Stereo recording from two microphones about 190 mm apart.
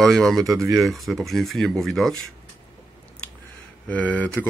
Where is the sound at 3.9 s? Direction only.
10° left (ahead or behind).